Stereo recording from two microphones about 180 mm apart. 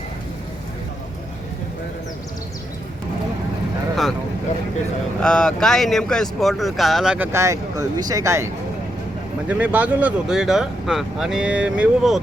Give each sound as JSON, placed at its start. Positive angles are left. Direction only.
{"t": 5.2, "sound": "speech", "side_deg": 5}
{"t": 9.5, "sound": "speech", "side_deg": -10}